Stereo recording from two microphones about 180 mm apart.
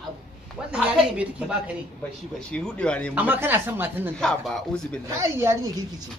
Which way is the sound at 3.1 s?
10° right (ahead or behind).